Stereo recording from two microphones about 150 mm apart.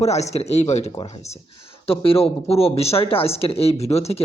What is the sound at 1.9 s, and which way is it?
Speech, 40° left (ahead or behind).